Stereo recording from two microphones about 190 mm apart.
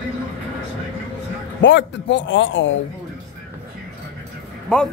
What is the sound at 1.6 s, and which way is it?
A man's voice, 75° left (ahead or behind).